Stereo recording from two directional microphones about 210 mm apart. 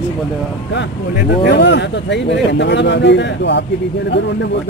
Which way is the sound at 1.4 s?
55° left (ahead or behind).